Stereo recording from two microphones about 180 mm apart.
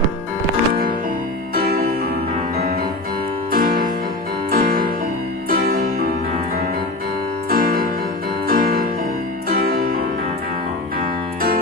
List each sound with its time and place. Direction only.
3.5 s music: 55° right (ahead or behind)
7.4 s music: 55° right (ahead or behind)